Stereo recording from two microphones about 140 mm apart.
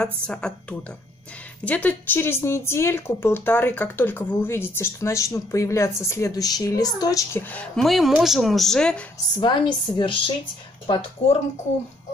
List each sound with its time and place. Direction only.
0.0 s speech: 5° left (ahead or behind); by 7.4 s 25° left (ahead or behind)
7.5 s speech: 5° left (ahead or behind)
9.4 s a woman's voice: 35° left (ahead or behind)